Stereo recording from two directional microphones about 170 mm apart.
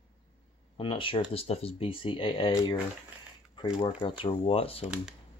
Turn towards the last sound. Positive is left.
turn(degrees=35)  # may be behind; listen again after turning